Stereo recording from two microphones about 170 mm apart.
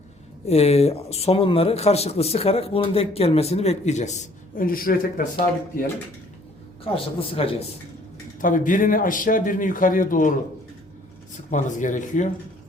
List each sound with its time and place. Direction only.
0.4 s speech: 40° left (ahead or behind); by 5.2 s 60° left (ahead or behind)
6.8 s speech: 35° left (ahead or behind)
8.4 s speech: 50° left (ahead or behind)
11.5 s speech: 50° left (ahead or behind)